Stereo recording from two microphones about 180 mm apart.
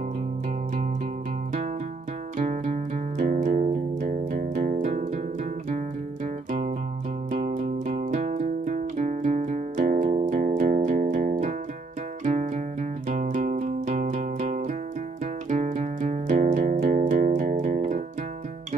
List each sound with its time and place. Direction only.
2.3 s music: 45° right (ahead or behind)
7.3 s music: 45° right (ahead or behind)
13.1 s music: 45° right (ahead or behind)